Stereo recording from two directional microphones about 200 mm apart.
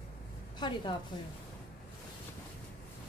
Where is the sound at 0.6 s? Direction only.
20° left (ahead or behind).